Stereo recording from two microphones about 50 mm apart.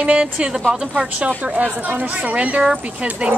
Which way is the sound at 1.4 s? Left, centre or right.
Right.